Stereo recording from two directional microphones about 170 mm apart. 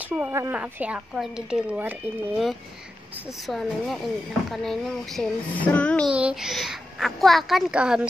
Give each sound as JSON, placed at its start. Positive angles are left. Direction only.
{"t": 0.0, "sound": "speech", "side_deg": -15}
{"t": 6.1, "sound": "speech", "side_deg": -5}